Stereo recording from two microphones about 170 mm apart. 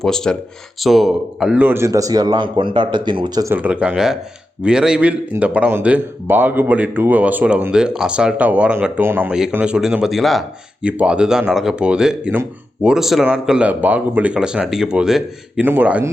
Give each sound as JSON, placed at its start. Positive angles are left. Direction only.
{"t": 0.0, "sound": "speech", "side_deg": 5}
{"t": 3.5, "sound": "a man's voice", "side_deg": -10}